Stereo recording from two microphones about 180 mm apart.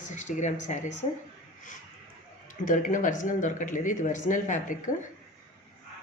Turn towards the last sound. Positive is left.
turn(degrees=45)  # may be behind; listen again after turning